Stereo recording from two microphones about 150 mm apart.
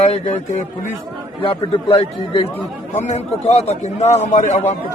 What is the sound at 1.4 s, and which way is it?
Speech, 40° left (ahead or behind).